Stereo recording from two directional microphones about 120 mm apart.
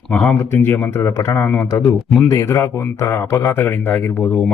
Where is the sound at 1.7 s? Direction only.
30° left (ahead or behind).